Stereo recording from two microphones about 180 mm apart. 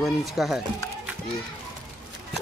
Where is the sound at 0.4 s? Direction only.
Centre (ahead or behind).